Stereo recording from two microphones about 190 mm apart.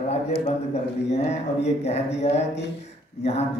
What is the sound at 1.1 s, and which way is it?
A man's voice, 35° left (ahead or behind).